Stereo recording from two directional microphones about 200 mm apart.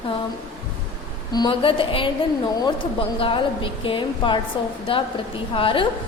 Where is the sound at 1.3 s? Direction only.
20° left (ahead or behind).